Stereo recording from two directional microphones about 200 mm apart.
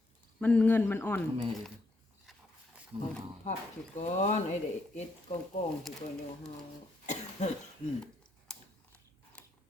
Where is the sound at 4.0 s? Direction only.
35° left (ahead or behind).